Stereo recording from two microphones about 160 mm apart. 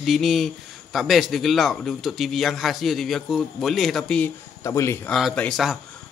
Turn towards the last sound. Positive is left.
turn(degrees=0)  # may be behind; listen again after turning